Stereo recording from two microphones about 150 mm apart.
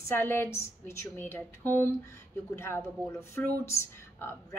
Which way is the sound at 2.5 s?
15° left (ahead or behind).